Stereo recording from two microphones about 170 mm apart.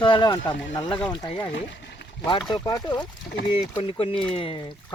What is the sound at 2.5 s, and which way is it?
Speech, 25° left (ahead or behind).